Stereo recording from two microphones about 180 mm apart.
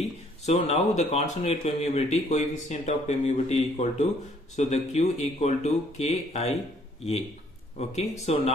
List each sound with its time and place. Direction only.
0.5 s speech: 35° left (ahead or behind)
7.7 s speech: 40° left (ahead or behind)